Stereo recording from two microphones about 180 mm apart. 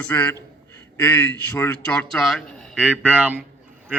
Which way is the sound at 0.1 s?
10° left (ahead or behind).